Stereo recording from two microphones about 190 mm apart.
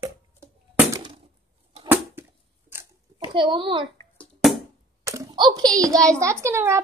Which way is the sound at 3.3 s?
25° right (ahead or behind).